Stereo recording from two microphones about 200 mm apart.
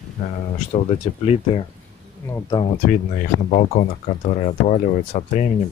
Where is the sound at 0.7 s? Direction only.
30° left (ahead or behind).